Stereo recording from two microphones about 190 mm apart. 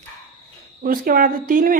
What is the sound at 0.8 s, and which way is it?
Speech, 50° right (ahead or behind).